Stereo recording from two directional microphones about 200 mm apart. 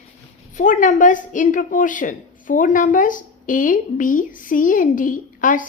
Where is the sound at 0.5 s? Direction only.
40° left (ahead or behind).